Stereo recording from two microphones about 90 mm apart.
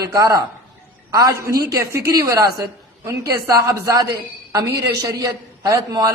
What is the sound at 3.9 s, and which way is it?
A man's voice, 45° right (ahead or behind).